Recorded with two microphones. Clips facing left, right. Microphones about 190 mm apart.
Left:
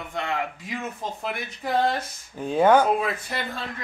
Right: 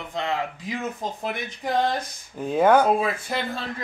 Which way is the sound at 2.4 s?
Centre (ahead or behind).